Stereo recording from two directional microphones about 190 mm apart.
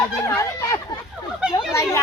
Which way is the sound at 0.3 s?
15° left (ahead or behind).